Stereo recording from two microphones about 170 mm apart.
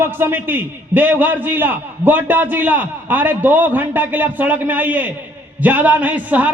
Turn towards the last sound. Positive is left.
turn(degrees=-10)  # may be behind; listen again after turning